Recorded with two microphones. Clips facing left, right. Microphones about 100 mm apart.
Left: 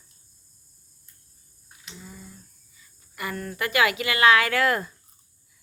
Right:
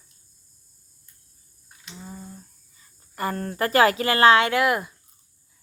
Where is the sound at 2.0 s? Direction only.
35° right (ahead or behind); by 4.9 s 15° right (ahead or behind).